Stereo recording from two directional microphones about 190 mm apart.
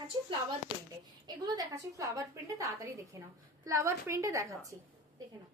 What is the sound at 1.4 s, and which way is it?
A woman's voice, 20° right (ahead or behind).